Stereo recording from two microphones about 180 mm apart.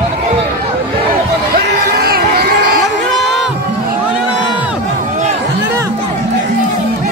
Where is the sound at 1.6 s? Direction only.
60° right (ahead or behind).